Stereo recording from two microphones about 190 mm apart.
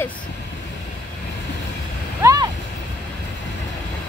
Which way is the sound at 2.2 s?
20° right (ahead or behind).